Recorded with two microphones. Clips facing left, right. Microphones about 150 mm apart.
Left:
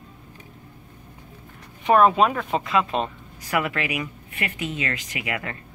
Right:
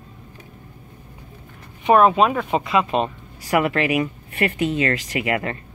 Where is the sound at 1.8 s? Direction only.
5° right (ahead or behind).